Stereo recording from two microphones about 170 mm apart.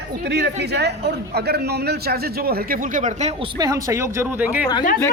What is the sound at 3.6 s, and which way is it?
Speech, 20° right (ahead or behind).